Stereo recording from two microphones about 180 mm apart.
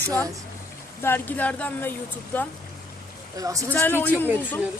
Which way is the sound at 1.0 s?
10° left (ahead or behind).